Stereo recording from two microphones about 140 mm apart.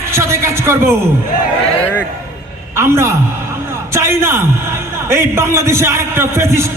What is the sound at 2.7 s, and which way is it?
A man's voice, 20° right (ahead or behind).